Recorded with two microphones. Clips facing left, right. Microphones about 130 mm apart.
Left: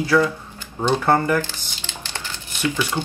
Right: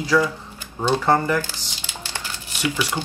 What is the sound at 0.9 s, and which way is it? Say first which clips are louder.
Speech: even; 10° left (ahead or behind).